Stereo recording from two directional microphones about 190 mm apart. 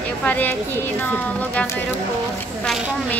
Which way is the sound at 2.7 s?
5° right (ahead or behind).